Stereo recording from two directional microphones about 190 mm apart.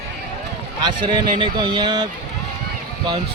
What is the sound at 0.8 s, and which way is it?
Speech, 25° right (ahead or behind).